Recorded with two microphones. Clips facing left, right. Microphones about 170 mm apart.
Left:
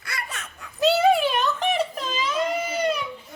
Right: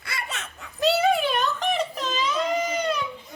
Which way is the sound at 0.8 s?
Centre (ahead or behind).